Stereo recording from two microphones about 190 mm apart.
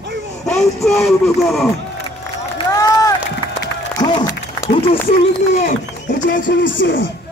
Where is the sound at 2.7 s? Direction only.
20° left (ahead or behind).